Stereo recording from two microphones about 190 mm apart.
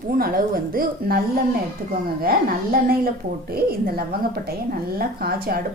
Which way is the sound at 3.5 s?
55° right (ahead or behind).